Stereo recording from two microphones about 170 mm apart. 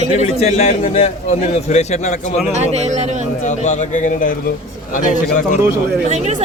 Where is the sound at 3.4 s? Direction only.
45° left (ahead or behind).